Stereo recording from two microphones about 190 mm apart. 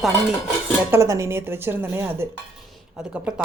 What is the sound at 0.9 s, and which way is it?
Speech, 15° right (ahead or behind).